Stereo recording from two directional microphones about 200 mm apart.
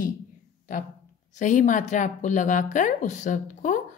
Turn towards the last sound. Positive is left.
turn(degrees=40)  # may be behind; listen again after turning